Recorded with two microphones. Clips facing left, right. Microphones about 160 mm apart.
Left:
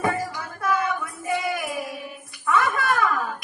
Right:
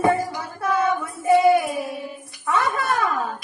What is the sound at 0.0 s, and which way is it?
Music, 25° right (ahead or behind).